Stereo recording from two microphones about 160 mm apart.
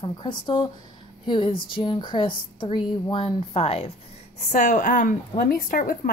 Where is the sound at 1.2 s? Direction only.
30° left (ahead or behind).